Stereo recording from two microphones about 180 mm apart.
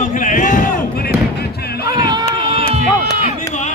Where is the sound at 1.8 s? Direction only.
20° right (ahead or behind).